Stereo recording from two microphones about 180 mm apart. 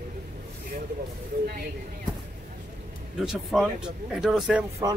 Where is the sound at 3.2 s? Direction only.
Centre (ahead or behind).